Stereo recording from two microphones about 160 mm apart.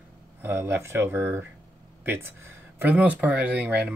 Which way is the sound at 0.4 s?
15° right (ahead or behind).